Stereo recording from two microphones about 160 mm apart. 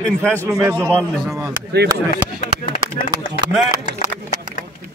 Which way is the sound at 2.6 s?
65° left (ahead or behind).